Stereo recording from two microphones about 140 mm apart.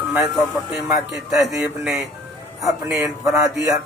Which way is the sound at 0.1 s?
5° right (ahead or behind).